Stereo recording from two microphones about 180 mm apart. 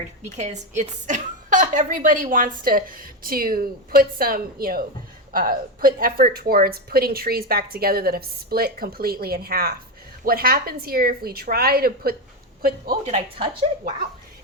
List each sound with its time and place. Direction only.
0.3 s a woman's voice: 40° right (ahead or behind); by 13.0 s 55° right (ahead or behind)
13.1 s a woman's voice: 35° right (ahead or behind)